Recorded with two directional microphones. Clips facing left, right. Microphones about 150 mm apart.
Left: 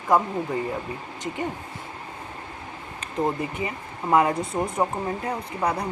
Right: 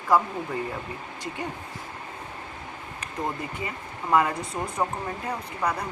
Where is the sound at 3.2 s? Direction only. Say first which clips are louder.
Left 5 dB; 20° left (ahead or behind).